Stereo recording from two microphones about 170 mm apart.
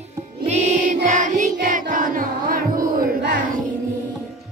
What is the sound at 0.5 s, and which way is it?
Music, 45° right (ahead or behind).